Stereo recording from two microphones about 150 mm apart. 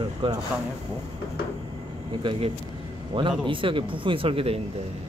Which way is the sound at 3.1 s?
35° right (ahead or behind).